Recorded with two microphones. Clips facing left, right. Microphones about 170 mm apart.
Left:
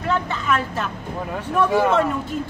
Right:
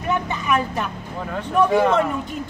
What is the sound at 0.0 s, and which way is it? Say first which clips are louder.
Speech: even; 15° right (ahead or behind).